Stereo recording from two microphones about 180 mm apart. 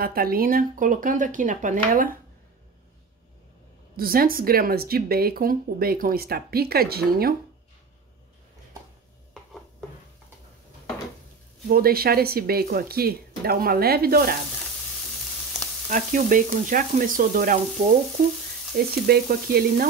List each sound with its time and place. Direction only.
0.0 s frying: 55° right (ahead or behind)
3.9 s speech: 55° right (ahead or behind)
9.3 s dishes: centre (ahead or behind)
11.7 s speech: 55° right (ahead or behind)
15.9 s frying: 50° right (ahead or behind)
19.0 s speech: 60° right (ahead or behind)